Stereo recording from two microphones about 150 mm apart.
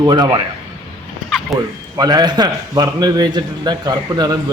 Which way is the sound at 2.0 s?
25° right (ahead or behind).